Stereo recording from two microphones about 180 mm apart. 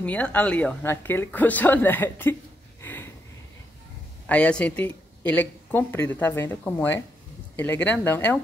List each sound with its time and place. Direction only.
0.0 s speech: 10° left (ahead or behind)
2.8 s a sound: 10° left (ahead or behind)
4.3 s speech: 5° left (ahead or behind)